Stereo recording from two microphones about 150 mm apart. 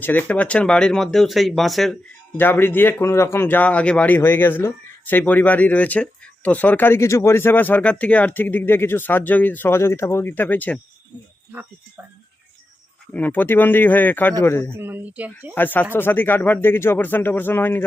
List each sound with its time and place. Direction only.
0.0 s speech: 10° left (ahead or behind)
2.4 s a man's voice: 15° left (ahead or behind)
11.5 s speech: 10° right (ahead or behind)
13.1 s a man's voice: 10° left (ahead or behind)
14.7 s speech: 15° right (ahead or behind)
15.5 s a man's voice: 10° left (ahead or behind)